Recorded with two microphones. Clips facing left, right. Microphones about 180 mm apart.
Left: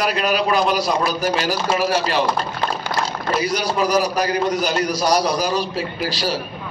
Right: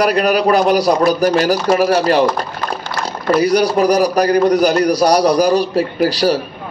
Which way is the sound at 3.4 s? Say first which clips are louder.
Right 9 dB; 60° right (ahead or behind).